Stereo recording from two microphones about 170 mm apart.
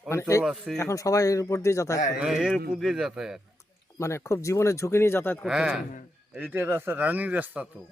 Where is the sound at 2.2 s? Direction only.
Centre (ahead or behind).